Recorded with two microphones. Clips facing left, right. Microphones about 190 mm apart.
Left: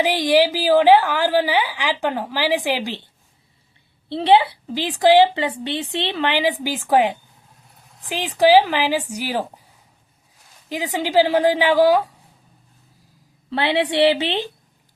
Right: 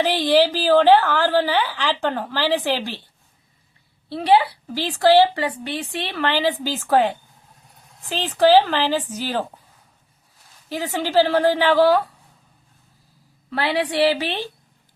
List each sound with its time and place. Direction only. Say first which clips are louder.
0.0 s a woman's voice: even; 15° left (ahead or behind)
4.1 s a woman's voice: left 2 dB; 25° left (ahead or behind)
10.7 s a woman's voice: left 1 dB; 15° left (ahead or behind)
13.5 s a woman's voice: left 2 dB; 25° left (ahead or behind)